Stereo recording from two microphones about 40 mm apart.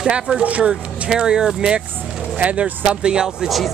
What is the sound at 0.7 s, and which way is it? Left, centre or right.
Speech, centre.